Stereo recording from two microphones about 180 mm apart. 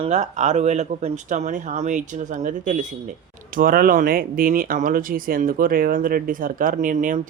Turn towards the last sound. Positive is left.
turn(degrees=-45)  # may be behind; listen again after turning